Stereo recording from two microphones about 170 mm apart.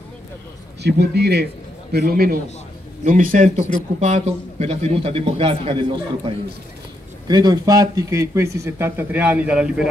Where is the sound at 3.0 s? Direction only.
50° right (ahead or behind).